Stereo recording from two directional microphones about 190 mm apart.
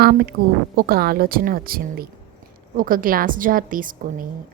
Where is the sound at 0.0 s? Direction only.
55° right (ahead or behind).